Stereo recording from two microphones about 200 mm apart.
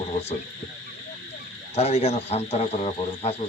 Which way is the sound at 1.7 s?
30° left (ahead or behind).